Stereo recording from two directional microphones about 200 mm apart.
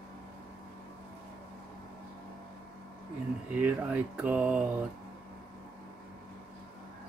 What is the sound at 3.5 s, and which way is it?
Speech, 10° right (ahead or behind).